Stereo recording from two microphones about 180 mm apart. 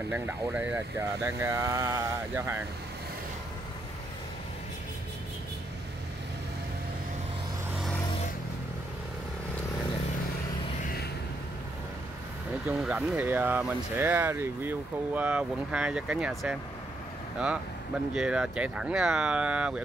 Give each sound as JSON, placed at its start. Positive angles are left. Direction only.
{"t": 0.1, "sound": "speech", "side_deg": -10}
{"t": 10.8, "sound": "a sound", "side_deg": 50}
{"t": 12.8, "sound": "speech", "side_deg": -10}
{"t": 18.1, "sound": "speech", "side_deg": -5}